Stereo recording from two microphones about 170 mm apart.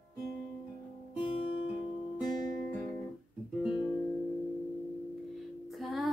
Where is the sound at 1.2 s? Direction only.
30° left (ahead or behind).